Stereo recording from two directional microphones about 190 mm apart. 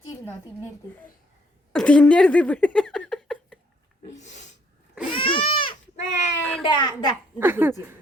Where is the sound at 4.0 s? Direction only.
35° left (ahead or behind).